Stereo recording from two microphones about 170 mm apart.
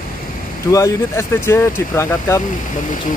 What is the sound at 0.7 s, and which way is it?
Speech, 15° left (ahead or behind).